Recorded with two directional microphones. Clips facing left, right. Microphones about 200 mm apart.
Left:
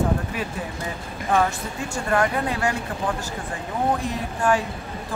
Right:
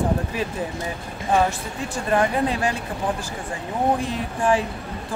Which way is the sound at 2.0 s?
20° right (ahead or behind).